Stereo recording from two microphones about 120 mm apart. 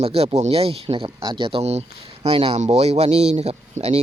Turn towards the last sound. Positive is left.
turn(degrees=-60)  # may be behind; listen again after turning